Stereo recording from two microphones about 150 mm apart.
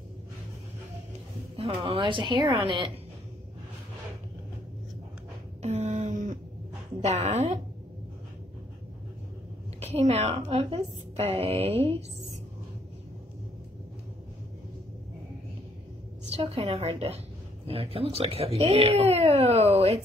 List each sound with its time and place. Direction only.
1.6 s speech: 40° right (ahead or behind)
5.6 s a sound: 50° right (ahead or behind)
9.8 s a woman's voice: 45° right (ahead or behind)
16.3 s speech: 40° right (ahead or behind)